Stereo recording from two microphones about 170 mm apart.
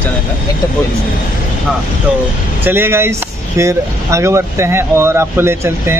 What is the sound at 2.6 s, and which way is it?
Speech, 10° right (ahead or behind).